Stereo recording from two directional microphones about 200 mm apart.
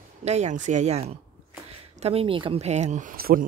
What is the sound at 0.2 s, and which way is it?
Speech, 35° right (ahead or behind).